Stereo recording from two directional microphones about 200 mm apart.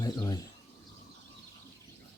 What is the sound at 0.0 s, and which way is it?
Bird, 20° left (ahead or behind).